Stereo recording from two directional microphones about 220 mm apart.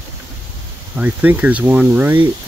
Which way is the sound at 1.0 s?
10° right (ahead or behind).